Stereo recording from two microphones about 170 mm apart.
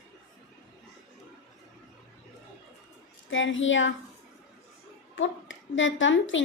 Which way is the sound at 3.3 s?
90° left.